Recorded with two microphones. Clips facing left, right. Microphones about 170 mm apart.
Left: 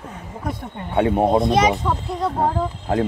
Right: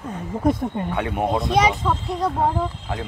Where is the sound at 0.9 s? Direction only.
30° left (ahead or behind).